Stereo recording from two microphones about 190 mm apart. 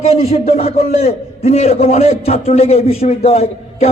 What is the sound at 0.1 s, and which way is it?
A man's voice, 30° left (ahead or behind).